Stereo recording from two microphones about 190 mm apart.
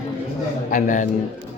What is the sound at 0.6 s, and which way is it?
Speech, 40° left (ahead or behind).